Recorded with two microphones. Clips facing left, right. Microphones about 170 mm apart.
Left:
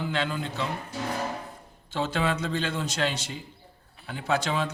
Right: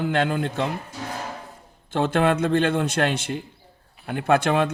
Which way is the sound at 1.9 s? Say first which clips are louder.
Right 7 dB; 55° right (ahead or behind).